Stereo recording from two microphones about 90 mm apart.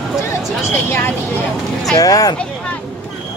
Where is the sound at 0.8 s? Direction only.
25° left (ahead or behind).